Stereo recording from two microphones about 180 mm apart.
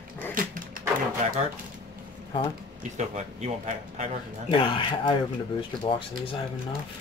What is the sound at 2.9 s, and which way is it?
Speech, 40° right (ahead or behind).